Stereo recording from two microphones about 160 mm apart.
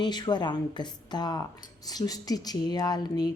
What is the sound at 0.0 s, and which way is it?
A woman's voice, 25° left (ahead or behind).